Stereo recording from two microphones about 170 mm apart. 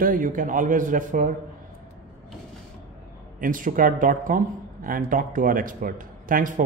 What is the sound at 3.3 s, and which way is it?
A man's voice, 50° right (ahead or behind).